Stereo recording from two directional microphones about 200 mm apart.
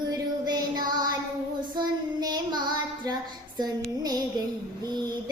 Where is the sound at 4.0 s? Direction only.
20° right (ahead or behind).